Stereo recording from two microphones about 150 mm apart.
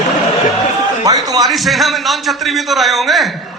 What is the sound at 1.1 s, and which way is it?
Speech, 25° right (ahead or behind).